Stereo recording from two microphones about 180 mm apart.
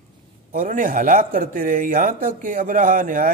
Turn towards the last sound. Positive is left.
turn(degrees=-50)  # may be behind; listen again after turning